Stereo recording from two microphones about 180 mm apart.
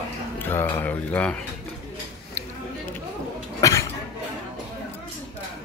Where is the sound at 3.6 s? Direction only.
20° left (ahead or behind).